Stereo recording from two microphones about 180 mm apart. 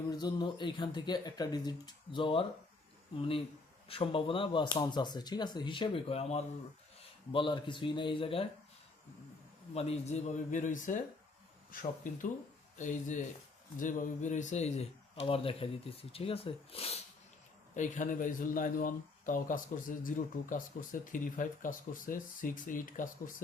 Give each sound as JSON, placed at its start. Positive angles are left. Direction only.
{"t": 0.1, "sound": "speech", "side_deg": 25}
{"t": 9.7, "sound": "a man's voice", "side_deg": 35}
{"t": 17.7, "sound": "a man's voice", "side_deg": 45}